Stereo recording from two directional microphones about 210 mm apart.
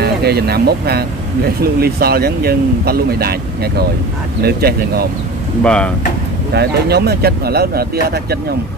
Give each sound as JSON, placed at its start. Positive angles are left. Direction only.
{"t": 0.0, "sound": "speech", "side_deg": -50}
{"t": 5.6, "sound": "speech", "side_deg": 5}
{"t": 6.5, "sound": "speech", "side_deg": -50}